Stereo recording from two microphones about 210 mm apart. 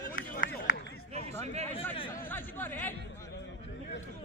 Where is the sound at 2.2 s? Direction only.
10° left (ahead or behind).